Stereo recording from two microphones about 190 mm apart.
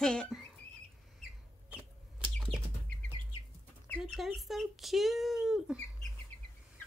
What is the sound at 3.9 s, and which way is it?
Speech, centre (ahead or behind).